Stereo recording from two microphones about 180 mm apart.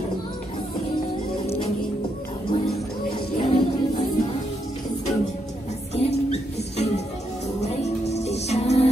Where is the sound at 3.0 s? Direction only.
25° left (ahead or behind).